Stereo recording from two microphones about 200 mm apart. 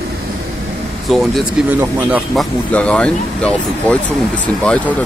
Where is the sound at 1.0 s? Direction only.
Centre (ahead or behind).